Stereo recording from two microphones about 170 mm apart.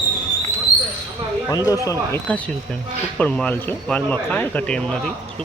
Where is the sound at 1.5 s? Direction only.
20° left (ahead or behind).